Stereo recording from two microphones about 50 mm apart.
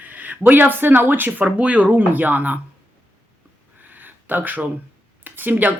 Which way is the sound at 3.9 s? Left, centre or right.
Right.